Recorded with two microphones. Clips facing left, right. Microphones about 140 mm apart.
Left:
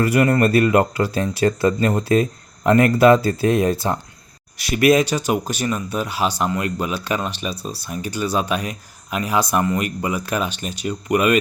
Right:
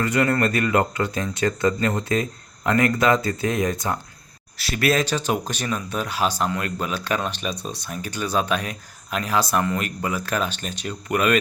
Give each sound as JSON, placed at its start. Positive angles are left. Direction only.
{"t": 0.0, "sound": "speech", "side_deg": 25}
{"t": 4.7, "sound": "speech", "side_deg": 15}